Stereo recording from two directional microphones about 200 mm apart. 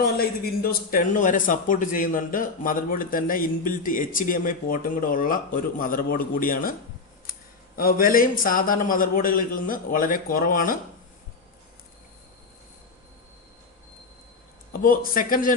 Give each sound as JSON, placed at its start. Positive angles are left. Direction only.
{"t": 0.0, "sound": "a man's voice", "side_deg": 50}
{"t": 7.8, "sound": "a man's voice", "side_deg": 45}
{"t": 14.7, "sound": "a man's voice", "side_deg": 45}